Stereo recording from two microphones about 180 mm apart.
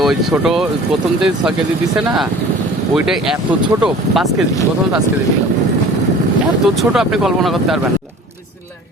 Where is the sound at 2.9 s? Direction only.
Centre (ahead or behind).